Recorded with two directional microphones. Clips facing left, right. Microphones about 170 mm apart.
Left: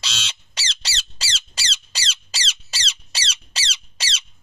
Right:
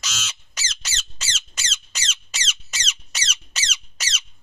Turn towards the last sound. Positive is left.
turn(degrees=30)  # may be behind; listen again after turning